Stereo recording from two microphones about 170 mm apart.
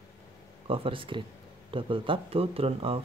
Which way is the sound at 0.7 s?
30° right (ahead or behind).